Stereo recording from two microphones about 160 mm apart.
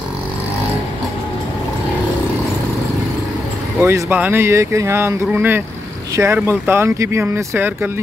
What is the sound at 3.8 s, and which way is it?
Speech, 15° right (ahead or behind).